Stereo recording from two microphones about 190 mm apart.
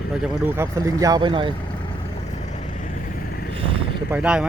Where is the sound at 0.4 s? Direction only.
15° right (ahead or behind).